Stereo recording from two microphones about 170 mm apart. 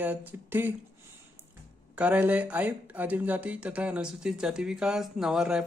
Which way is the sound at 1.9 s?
10° right (ahead or behind).